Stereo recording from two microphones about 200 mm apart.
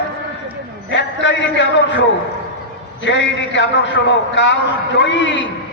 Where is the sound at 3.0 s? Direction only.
65° left (ahead or behind).